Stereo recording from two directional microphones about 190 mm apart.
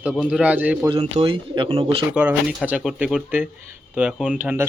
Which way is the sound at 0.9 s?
30° right (ahead or behind).